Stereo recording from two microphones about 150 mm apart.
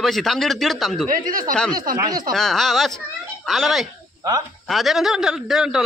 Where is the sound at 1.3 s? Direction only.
70° right (ahead or behind).